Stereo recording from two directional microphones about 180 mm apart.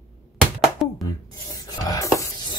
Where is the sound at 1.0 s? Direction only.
20° left (ahead or behind).